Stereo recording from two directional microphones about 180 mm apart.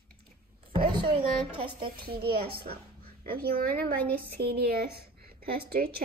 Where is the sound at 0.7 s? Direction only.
25° right (ahead or behind).